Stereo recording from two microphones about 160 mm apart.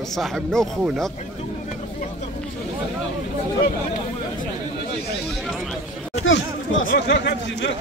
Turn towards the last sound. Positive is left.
turn(degrees=90)